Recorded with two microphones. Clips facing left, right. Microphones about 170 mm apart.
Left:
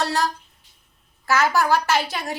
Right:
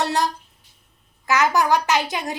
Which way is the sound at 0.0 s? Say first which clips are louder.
Right 1 dB; 20° right (ahead or behind).